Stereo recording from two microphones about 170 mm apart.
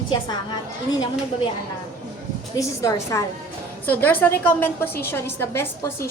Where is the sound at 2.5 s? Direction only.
20° left (ahead or behind).